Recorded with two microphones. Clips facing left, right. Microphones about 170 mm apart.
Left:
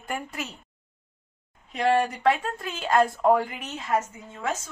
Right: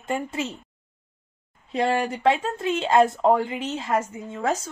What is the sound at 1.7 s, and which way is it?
Speech, 30° right (ahead or behind).